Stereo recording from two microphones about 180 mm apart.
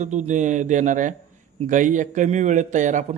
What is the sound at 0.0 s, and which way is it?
Speech, 40° right (ahead or behind).